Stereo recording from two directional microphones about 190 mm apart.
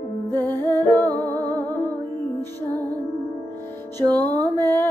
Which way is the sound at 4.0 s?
20° right (ahead or behind).